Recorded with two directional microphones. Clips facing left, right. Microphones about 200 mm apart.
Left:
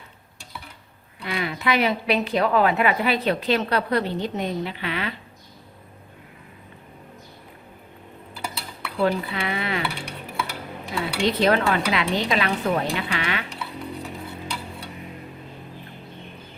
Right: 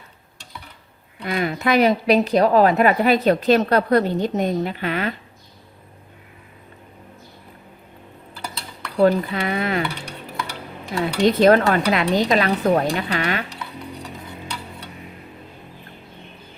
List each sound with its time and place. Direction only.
1.2 s a woman's voice: 45° right (ahead or behind)
9.0 s a woman's voice: 45° right (ahead or behind)
11.2 s a woman's voice: 45° right (ahead or behind)